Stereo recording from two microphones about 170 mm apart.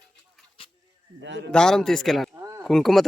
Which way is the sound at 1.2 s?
90° right.